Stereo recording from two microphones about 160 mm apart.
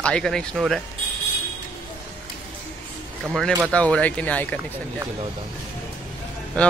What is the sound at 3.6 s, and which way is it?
Speech, 10° left (ahead or behind).